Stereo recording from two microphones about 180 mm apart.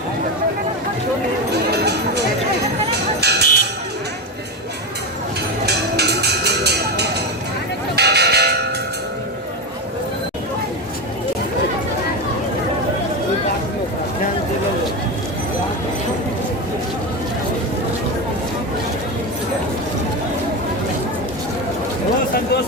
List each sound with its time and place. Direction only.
1.7 s music: 65° right (ahead or behind)
3.2 s music: 65° right (ahead or behind)
5.6 s music: 65° right (ahead or behind)
7.9 s bell: 65° right (ahead or behind)